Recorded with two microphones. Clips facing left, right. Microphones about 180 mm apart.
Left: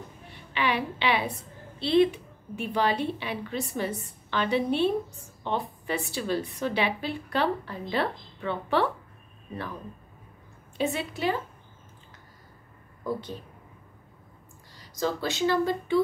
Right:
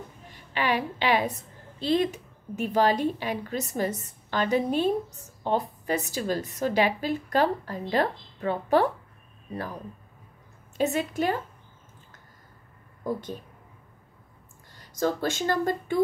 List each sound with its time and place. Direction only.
0.3 s a woman's voice: 45° right (ahead or behind)
10.8 s a woman's voice: 45° right (ahead or behind)
14.8 s speech: 50° right (ahead or behind)